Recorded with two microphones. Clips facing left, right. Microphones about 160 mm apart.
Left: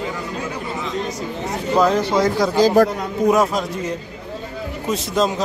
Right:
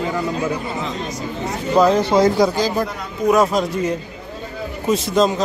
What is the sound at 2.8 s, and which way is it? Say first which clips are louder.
Speech: left 8 dB; 90° left.